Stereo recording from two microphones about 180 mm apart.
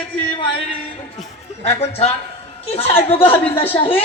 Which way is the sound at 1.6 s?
35° left (ahead or behind).